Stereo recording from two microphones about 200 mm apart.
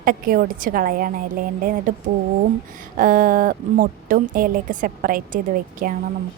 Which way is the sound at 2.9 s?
45° right (ahead or behind).